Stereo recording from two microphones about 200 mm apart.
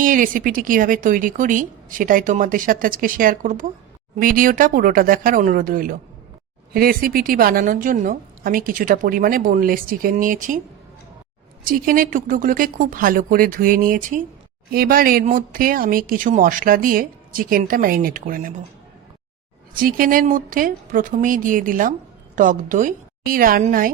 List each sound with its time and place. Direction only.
0.0 s a woman's voice: 40° right (ahead or behind)
11.6 s a woman's voice: 45° right (ahead or behind)
19.7 s a woman's voice: 45° right (ahead or behind)